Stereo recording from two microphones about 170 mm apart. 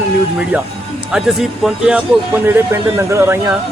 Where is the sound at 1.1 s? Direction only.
5° right (ahead or behind).